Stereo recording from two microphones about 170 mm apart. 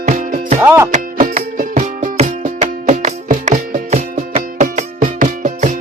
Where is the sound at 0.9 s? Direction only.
50° right (ahead or behind).